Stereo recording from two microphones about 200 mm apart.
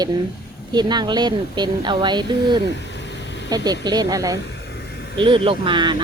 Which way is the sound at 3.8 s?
20° right (ahead or behind).